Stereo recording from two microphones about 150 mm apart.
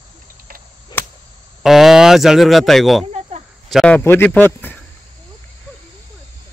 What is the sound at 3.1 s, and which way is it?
Cricket, 45° right (ahead or behind).